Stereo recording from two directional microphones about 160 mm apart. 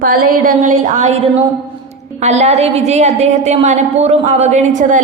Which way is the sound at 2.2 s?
45° right (ahead or behind).